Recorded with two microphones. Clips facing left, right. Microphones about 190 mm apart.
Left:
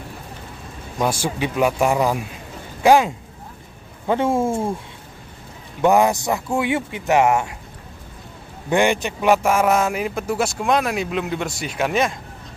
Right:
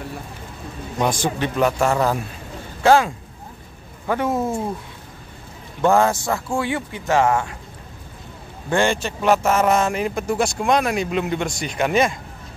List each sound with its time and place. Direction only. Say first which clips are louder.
0.9 s speech: right 1 dB; 10° left (ahead or behind)
4.1 s speech: left 2 dB; 25° left (ahead or behind)
5.8 s speech: left 1 dB; 15° left (ahead or behind)
8.6 s speech: left 2 dB; 15° left (ahead or behind); by 12.2 s centre (ahead or behind)